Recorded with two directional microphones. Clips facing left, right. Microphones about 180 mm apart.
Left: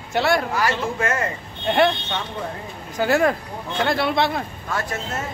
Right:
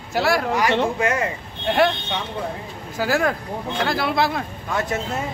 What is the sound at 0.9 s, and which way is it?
Speech, 15° right (ahead or behind).